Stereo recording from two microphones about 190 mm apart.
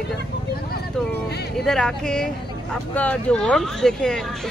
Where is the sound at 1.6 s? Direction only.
5° left (ahead or behind).